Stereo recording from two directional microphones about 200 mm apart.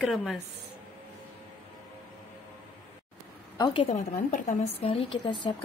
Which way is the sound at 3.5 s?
20° left (ahead or behind).